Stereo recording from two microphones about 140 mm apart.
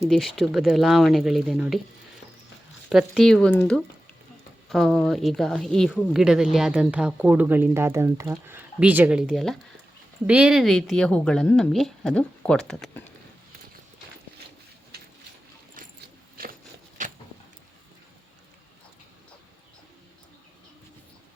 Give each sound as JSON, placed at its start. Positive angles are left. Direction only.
{"t": 0.1, "sound": "a woman's voice", "side_deg": 0}
{"t": 2.9, "sound": "a woman's voice", "side_deg": 0}
{"t": 17.0, "sound": "a sound", "side_deg": -65}